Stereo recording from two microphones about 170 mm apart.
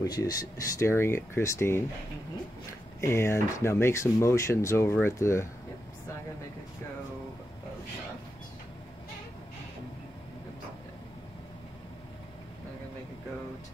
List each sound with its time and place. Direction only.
0.0 s speech: 20° left (ahead or behind)
3.0 s speech: 15° left (ahead or behind)